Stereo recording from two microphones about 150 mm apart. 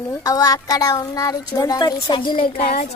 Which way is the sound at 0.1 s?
25° left (ahead or behind).